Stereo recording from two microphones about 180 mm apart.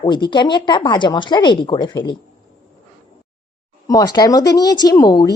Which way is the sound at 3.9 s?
20° left (ahead or behind).